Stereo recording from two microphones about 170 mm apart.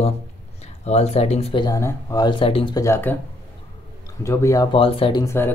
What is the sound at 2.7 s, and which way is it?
Speech, 15° left (ahead or behind).